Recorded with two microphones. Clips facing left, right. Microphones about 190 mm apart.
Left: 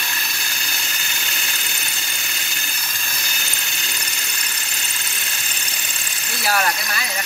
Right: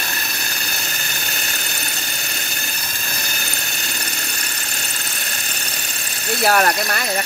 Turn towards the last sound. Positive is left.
turn(degrees=-50)  # may be behind; listen again after turning